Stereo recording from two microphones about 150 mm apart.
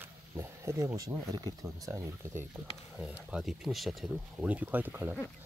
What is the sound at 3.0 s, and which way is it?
Speech, 5° right (ahead or behind).